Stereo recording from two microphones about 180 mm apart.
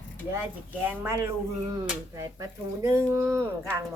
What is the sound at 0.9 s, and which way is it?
Speech, 15° right (ahead or behind).